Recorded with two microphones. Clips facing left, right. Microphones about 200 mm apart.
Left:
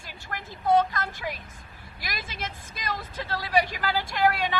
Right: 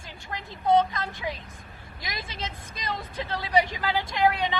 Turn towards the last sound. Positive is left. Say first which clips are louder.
# even
turn(degrees=-20)  # may be behind; listen again after turning